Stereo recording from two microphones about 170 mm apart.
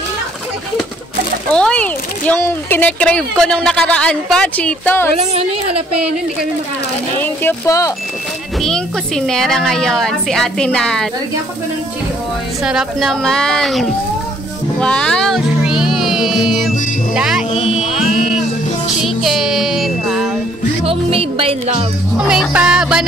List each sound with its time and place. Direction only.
1.5 s speech: 5° left (ahead or behind)
5.1 s music: 35° right (ahead or behind)
7.4 s speech: 20° left (ahead or behind)
8.5 s a woman's voice: 5° left (ahead or behind)
12.6 s a woman's voice: centre (ahead or behind)
17.6 s music: centre (ahead or behind)
18.9 s a woman's voice: centre (ahead or behind)
20.8 s music: 35° right (ahead or behind)
22.3 s a woman's voice: 5° right (ahead or behind)